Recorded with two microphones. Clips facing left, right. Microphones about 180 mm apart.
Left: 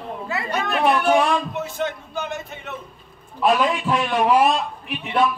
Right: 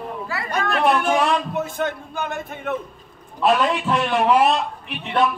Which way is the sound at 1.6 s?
50° right (ahead or behind).